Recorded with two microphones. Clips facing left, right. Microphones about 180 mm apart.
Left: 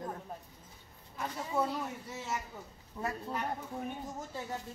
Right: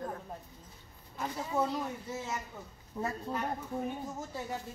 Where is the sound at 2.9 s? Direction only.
25° right (ahead or behind).